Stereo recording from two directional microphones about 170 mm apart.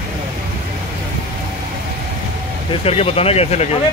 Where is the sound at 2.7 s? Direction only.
35° left (ahead or behind).